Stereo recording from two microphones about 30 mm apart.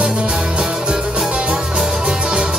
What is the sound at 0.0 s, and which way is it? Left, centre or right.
Music, right.